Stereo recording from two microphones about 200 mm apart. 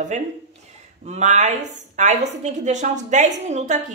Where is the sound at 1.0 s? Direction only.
35° right (ahead or behind).